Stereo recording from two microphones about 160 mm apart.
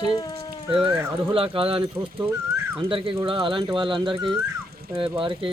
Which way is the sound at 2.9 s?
35° right (ahead or behind).